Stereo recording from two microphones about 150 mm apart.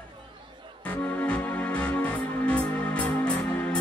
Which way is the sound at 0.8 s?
10° left (ahead or behind).